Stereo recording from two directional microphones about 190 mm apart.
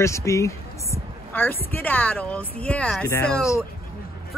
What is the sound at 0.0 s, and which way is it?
A woman's voice, 15° left (ahead or behind).